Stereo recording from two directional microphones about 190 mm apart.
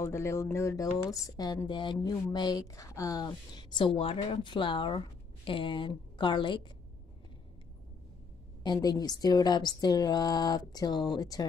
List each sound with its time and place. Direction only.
0.0 s speech: 15° left (ahead or behind)
8.6 s speech: 20° left (ahead or behind)